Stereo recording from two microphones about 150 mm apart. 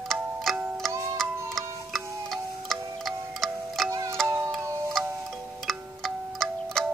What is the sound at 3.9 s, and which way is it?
Music, 20° right (ahead or behind).